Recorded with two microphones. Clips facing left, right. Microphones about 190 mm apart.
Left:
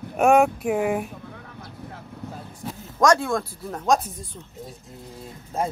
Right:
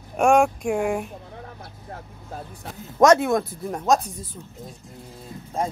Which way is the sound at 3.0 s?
20° right (ahead or behind).